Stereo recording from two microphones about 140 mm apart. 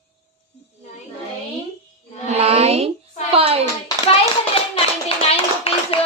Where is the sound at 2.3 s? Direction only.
45° right (ahead or behind).